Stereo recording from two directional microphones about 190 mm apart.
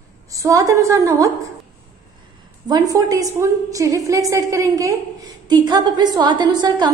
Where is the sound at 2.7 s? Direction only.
20° right (ahead or behind).